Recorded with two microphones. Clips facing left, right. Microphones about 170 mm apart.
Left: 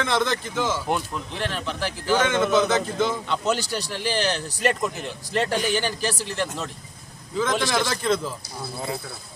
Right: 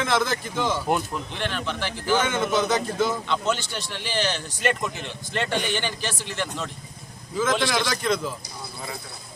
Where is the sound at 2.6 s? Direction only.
10° right (ahead or behind).